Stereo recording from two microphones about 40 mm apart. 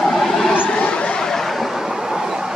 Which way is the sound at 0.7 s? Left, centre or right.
Left.